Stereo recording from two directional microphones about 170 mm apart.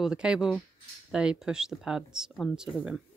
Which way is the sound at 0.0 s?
5° right (ahead or behind).